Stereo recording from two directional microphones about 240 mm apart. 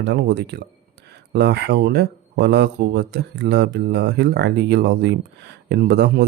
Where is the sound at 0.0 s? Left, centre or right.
Right.